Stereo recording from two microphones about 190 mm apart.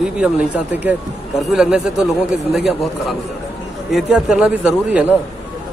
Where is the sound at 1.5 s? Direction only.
5° right (ahead or behind).